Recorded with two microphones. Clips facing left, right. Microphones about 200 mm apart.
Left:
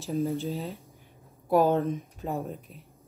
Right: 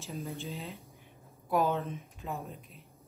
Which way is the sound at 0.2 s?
30° left (ahead or behind).